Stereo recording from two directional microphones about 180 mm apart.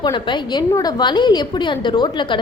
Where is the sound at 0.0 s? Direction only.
25° left (ahead or behind).